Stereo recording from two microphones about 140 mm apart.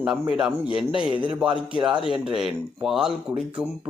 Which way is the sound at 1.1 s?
35° right (ahead or behind).